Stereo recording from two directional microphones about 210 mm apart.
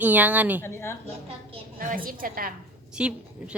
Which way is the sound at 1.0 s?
25° right (ahead or behind).